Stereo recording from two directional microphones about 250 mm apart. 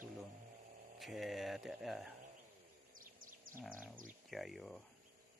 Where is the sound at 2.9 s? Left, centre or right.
Right.